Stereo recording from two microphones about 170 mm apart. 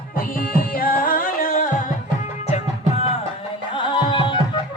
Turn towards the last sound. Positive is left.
turn(degrees=30)  # may be behind; listen again after turning